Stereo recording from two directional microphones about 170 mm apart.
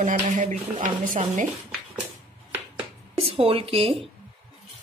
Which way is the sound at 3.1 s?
35° right (ahead or behind).